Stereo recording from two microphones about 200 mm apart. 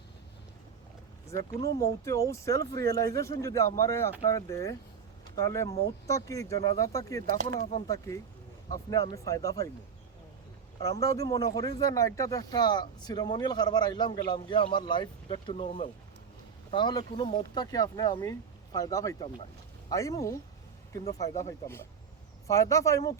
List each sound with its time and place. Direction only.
1.8 s speech: 15° left (ahead or behind)
11.0 s speech: 15° left (ahead or behind)